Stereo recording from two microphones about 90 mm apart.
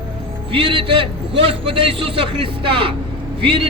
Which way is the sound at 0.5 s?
75° right (ahead or behind).